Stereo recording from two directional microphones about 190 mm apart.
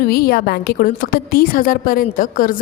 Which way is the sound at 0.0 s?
50° left (ahead or behind).